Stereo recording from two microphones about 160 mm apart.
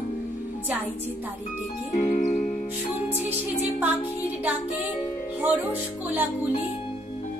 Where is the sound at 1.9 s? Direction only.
45° left (ahead or behind).